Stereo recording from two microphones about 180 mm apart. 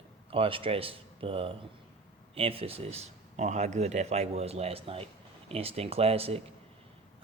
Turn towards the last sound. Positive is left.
turn(degrees=-35)  # may be behind; listen again after turning